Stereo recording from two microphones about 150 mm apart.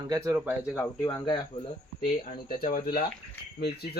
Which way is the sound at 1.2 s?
35° left (ahead or behind).